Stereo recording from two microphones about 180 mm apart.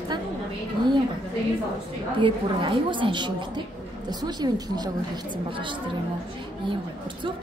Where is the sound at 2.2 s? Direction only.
25° right (ahead or behind).